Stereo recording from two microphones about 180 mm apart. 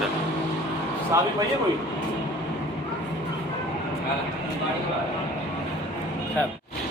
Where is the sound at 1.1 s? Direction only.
15° right (ahead or behind).